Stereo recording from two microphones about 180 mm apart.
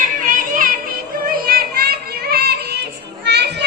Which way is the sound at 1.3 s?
55° right (ahead or behind).